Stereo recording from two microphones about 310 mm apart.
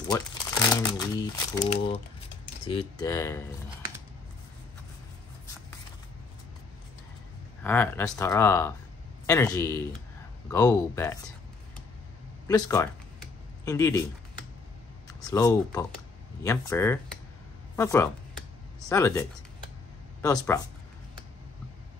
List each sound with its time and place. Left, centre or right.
0.7 s speech: centre
7.6 s speech: centre
12.4 s computer keyboard: centre
15.0 s speech: centre